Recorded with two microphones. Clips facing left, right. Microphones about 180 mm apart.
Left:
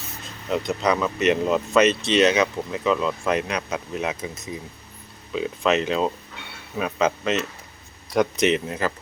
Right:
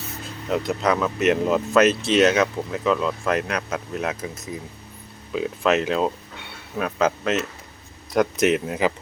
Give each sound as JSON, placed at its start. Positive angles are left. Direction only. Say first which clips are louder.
{"t": 0.4, "sound": "speech", "louder": "right 1 dB", "side_deg": -5}